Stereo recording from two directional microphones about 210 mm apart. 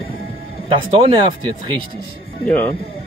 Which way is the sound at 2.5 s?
5° left (ahead or behind).